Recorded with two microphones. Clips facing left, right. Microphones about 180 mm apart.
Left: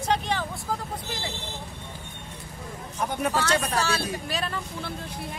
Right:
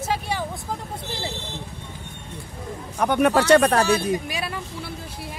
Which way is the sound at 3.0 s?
70° right (ahead or behind).